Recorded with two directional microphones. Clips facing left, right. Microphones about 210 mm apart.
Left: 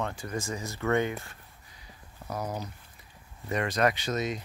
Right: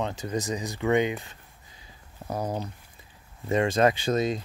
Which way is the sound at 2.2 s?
30° right (ahead or behind).